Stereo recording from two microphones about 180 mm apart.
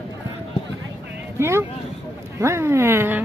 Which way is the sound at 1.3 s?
15° right (ahead or behind).